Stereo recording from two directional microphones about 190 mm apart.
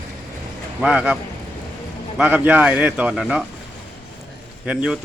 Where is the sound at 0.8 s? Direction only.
5° right (ahead or behind).